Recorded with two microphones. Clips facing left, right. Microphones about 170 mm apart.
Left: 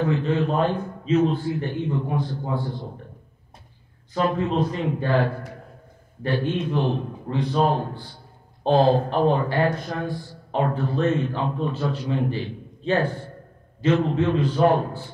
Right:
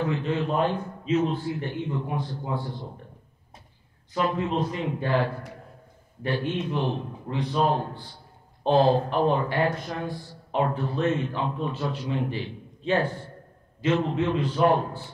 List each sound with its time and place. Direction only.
0.0 s a man's voice: 40° left (ahead or behind)
4.1 s a man's voice: 35° left (ahead or behind)